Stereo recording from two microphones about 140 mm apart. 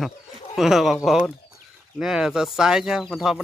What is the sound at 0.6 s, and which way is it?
Speech, centre (ahead or behind).